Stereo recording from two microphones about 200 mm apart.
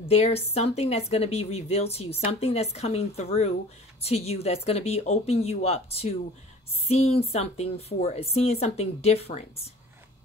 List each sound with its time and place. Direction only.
0.1 s speech: 30° left (ahead or behind)